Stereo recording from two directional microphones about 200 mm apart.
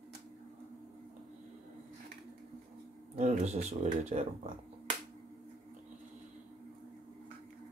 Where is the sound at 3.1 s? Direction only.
35° right (ahead or behind).